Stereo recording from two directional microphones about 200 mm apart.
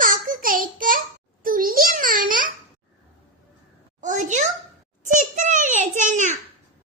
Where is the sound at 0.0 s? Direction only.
45° right (ahead or behind).